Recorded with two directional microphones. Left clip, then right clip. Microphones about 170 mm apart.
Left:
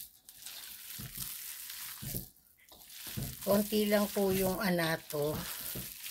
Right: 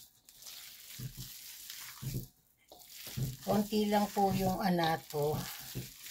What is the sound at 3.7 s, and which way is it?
Speech, 45° left (ahead or behind).